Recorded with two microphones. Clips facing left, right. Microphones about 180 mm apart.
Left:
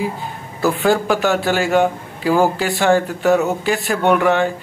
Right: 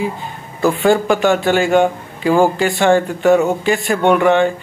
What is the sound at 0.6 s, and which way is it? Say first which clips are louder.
A man's voice: right 3 dB; 5° left (ahead or behind).